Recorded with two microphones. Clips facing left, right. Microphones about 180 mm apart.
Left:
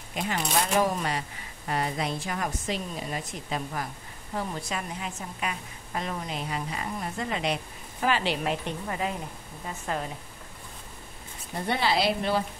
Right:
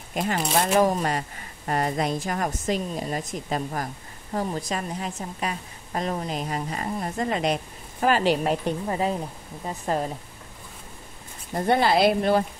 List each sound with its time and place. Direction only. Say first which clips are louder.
0.1 s a woman's voice: right 4 dB; 45° right (ahead or behind)
11.5 s speech: right 6 dB; 50° right (ahead or behind)